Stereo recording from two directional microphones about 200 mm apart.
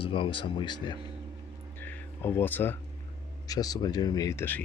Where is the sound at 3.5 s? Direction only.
20° left (ahead or behind).